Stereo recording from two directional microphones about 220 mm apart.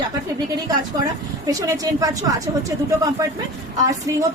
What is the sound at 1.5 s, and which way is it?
A woman's voice, 15° right (ahead or behind).